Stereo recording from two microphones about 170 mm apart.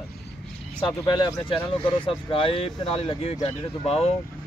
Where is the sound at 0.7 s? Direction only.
25° left (ahead or behind).